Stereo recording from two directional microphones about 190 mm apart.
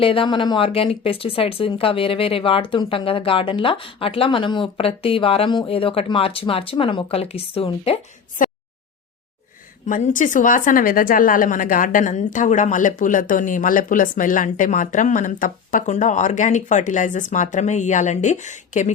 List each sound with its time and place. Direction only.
0.0 s speech: 30° left (ahead or behind)
8.4 s a sound: 45° left (ahead or behind)
9.8 s a woman's voice: 45° left (ahead or behind)